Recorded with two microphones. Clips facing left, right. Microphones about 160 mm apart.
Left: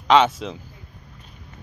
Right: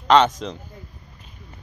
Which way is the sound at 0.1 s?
5° left (ahead or behind).